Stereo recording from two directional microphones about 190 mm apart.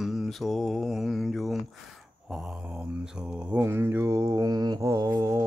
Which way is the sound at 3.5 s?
10° right (ahead or behind).